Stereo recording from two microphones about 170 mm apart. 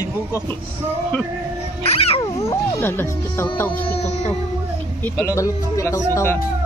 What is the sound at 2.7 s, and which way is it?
Speech, 15° left (ahead or behind).